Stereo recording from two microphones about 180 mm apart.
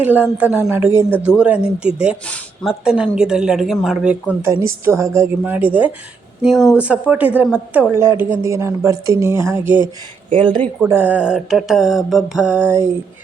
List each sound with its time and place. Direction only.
0.0 s a woman's voice: 10° right (ahead or behind)
2.2 s speech: 5° left (ahead or behind)
2.6 s a woman's voice: 5° right (ahead or behind)
10.3 s speech: 25° right (ahead or behind)
10.8 s speech: 10° right (ahead or behind)